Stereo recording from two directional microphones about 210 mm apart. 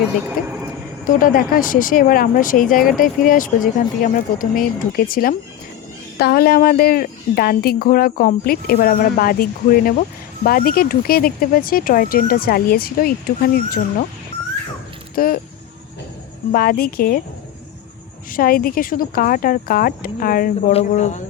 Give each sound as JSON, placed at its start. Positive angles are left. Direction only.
{"t": 0.4, "sound": "a woman's voice", "side_deg": 40}
{"t": 15.1, "sound": "speech", "side_deg": 45}
{"t": 16.5, "sound": "a woman's voice", "side_deg": 45}
{"t": 18.3, "sound": "a woman's voice", "side_deg": 45}